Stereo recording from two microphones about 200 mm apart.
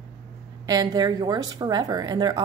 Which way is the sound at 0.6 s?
20° right (ahead or behind).